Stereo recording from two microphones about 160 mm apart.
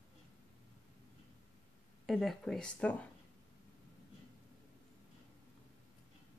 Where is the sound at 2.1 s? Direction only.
Centre (ahead or behind).